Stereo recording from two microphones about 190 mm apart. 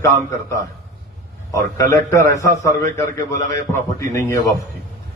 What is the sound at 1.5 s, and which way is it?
A man's voice, 15° left (ahead or behind).